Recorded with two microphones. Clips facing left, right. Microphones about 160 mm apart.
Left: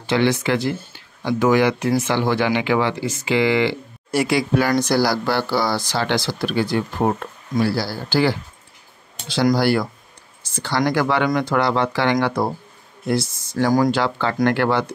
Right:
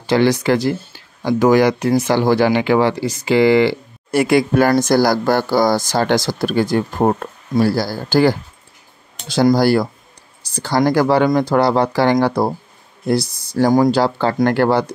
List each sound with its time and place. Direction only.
0.0 s speech: 40° right (ahead or behind)
4.1 s speech: 55° right (ahead or behind)
9.6 s speech: 40° right (ahead or behind)